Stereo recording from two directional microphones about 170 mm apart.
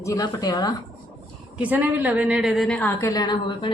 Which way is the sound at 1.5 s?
10° right (ahead or behind).